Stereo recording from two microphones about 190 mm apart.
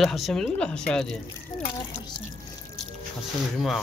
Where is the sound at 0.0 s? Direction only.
Centre (ahead or behind).